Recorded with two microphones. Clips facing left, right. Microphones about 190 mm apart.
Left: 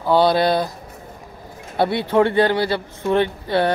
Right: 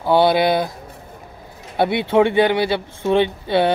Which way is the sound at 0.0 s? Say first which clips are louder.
Right 1 dB; 20° right (ahead or behind).